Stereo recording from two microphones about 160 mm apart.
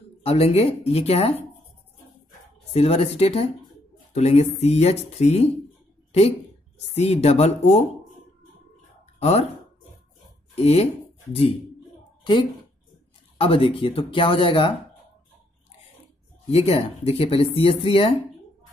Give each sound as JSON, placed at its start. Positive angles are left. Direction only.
{"t": 0.2, "sound": "speech", "side_deg": 40}
{"t": 2.7, "sound": "speech", "side_deg": 40}
{"t": 6.9, "sound": "speech", "side_deg": 40}
{"t": 9.2, "sound": "speech", "side_deg": 40}
{"t": 10.5, "sound": "speech", "side_deg": 40}
{"t": 13.4, "sound": "speech", "side_deg": 35}
{"t": 16.4, "sound": "speech", "side_deg": 40}